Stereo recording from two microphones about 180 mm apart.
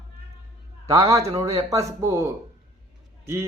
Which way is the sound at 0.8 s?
20° right (ahead or behind).